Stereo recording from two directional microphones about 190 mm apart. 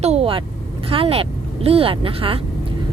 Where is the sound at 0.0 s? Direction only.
35° right (ahead or behind).